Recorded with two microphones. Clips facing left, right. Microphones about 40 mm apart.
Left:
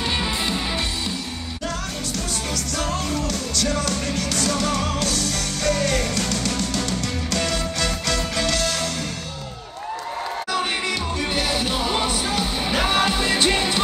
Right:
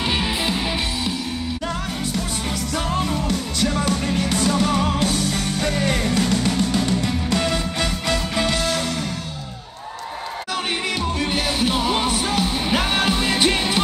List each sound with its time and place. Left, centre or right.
0.0 s music: centre
2.7 s music: centre
11.1 s music: centre